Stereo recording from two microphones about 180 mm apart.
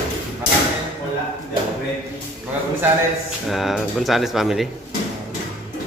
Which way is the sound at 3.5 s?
Centre (ahead or behind).